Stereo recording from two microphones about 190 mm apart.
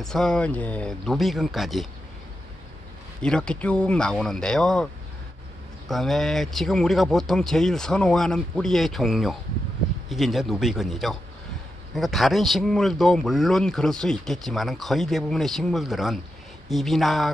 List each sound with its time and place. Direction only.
0.0 s a man's voice: 5° left (ahead or behind)
3.2 s a man's voice: 5° left (ahead or behind)
5.9 s a man's voice: centre (ahead or behind)